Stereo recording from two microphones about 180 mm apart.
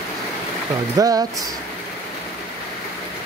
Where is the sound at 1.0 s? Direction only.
20° right (ahead or behind).